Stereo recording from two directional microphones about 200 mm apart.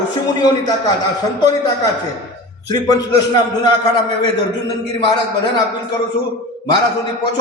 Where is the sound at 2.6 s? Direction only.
20° left (ahead or behind).